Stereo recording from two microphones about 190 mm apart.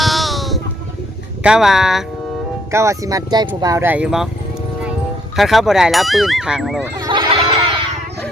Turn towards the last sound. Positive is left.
turn(degrees=-25)  # may be behind; listen again after turning